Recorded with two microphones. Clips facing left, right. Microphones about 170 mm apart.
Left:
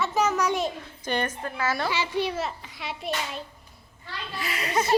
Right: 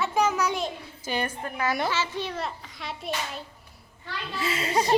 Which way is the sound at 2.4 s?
Centre (ahead or behind).